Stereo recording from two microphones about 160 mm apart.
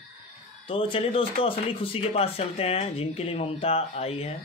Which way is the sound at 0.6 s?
35° left (ahead or behind).